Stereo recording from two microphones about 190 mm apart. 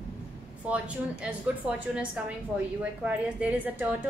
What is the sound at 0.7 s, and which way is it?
A woman's voice, 5° right (ahead or behind).